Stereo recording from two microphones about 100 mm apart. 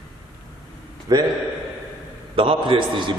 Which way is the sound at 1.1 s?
40° right (ahead or behind).